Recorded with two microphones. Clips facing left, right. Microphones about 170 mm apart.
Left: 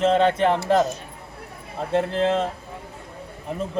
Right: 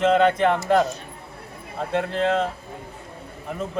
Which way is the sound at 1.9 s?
30° left (ahead or behind).